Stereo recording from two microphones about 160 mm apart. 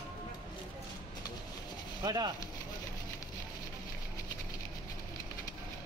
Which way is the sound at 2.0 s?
25° right (ahead or behind).